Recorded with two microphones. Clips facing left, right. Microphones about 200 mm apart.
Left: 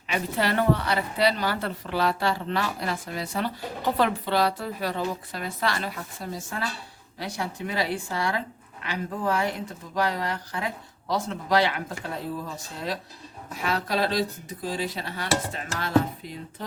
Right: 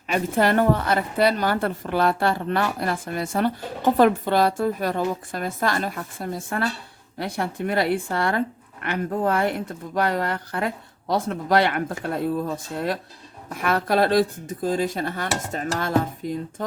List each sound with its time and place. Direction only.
0.1 s a woman's voice: 50° right (ahead or behind)